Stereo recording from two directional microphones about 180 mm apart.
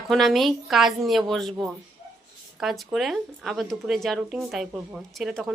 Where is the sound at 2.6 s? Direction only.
Centre (ahead or behind).